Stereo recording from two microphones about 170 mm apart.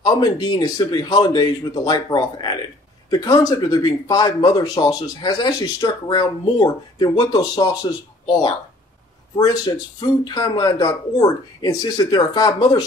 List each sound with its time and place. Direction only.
0.0 s speech: 25° left (ahead or behind)